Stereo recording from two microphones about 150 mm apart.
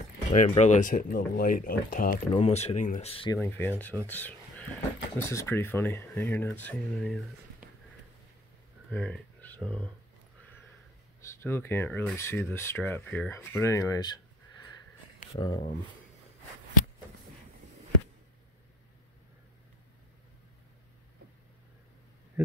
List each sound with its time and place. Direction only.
0.3 s speech: 50° left (ahead or behind)
2.3 s speech: 45° left (ahead or behind)
3.3 s speech: 10° left (ahead or behind)
4.1 s a sound: 10° left (ahead or behind)
5.2 s speech: 15° left (ahead or behind)
8.9 s a sound: 10° left (ahead or behind)
9.6 s speech: 5° left (ahead or behind)
11.1 s speech: 20° left (ahead or behind)